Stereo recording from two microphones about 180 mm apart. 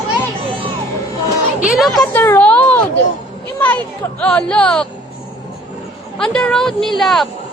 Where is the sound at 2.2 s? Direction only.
10° left (ahead or behind).